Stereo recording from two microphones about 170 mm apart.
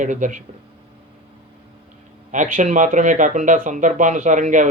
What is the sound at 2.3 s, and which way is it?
Speech, 50° right (ahead or behind).